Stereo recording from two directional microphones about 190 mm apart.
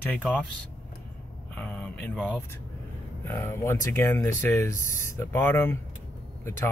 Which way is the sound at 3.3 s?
10° left (ahead or behind).